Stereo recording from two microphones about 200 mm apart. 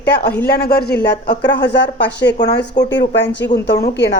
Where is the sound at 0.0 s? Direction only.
55° left (ahead or behind).